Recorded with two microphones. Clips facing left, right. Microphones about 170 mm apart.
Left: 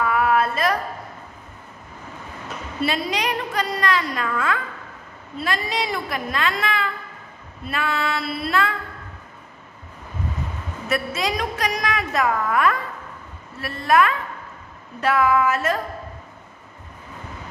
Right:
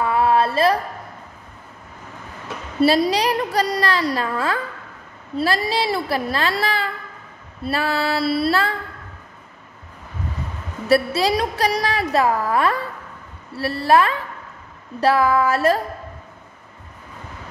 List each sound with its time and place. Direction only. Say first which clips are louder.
0.0 s a sound: right 2 dB; 30° right (ahead or behind)
2.8 s a woman's voice: right 7 dB; 35° right (ahead or behind)
10.9 s a woman's voice: right 7 dB; 35° right (ahead or behind)